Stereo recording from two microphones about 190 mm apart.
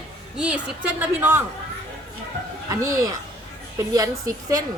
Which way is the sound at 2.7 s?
15° right (ahead or behind).